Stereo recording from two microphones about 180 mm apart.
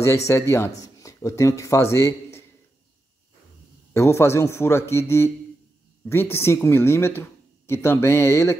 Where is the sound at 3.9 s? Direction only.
15° left (ahead or behind).